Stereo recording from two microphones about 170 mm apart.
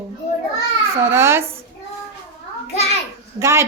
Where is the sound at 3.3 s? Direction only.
15° right (ahead or behind).